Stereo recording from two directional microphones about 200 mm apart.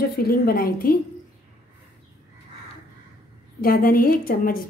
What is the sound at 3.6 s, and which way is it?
A woman's voice, 45° left (ahead or behind).